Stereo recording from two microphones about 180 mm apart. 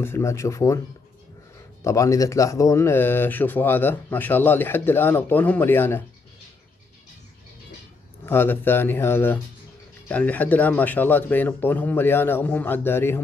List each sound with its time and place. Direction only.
0.0 s speech: 15° left (ahead or behind)
1.9 s speech: 15° left (ahead or behind)
8.3 s speech: 10° left (ahead or behind)